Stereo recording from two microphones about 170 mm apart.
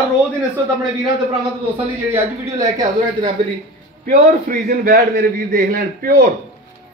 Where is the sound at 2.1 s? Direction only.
20° right (ahead or behind).